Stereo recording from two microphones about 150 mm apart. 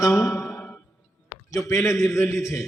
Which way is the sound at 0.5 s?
10° left (ahead or behind).